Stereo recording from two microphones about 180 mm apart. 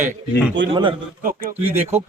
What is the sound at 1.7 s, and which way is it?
Speech, 10° right (ahead or behind).